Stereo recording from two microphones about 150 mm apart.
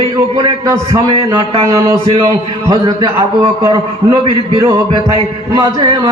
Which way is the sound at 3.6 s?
20° right (ahead or behind).